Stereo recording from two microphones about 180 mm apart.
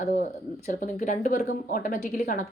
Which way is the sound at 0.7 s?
45° left (ahead or behind).